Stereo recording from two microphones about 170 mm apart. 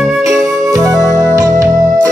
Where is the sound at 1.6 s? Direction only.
Centre (ahead or behind).